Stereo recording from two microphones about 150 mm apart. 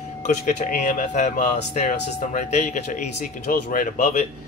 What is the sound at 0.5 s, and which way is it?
Speech, 60° left (ahead or behind).